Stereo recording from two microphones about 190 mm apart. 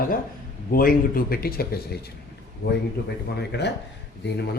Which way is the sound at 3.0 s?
55° left (ahead or behind).